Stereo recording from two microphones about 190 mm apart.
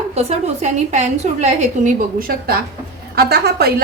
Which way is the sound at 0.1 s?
35° right (ahead or behind).